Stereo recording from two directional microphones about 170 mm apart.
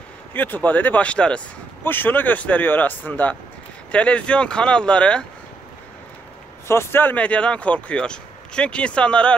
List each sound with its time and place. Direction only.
0.3 s speech: 10° left (ahead or behind)
6.7 s speech: 15° left (ahead or behind)